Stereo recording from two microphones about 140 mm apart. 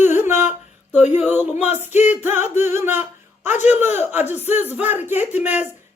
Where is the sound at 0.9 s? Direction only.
55° left (ahead or behind).